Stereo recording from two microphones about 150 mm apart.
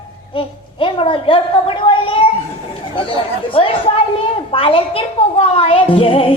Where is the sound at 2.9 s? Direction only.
35° left (ahead or behind).